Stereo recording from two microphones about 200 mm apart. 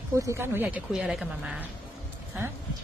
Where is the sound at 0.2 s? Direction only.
15° right (ahead or behind).